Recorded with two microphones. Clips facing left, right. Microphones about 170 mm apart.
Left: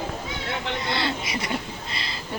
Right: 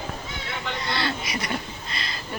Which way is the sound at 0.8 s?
20° left (ahead or behind).